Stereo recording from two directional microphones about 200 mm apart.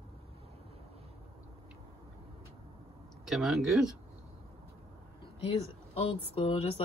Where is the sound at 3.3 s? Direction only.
Centre (ahead or behind).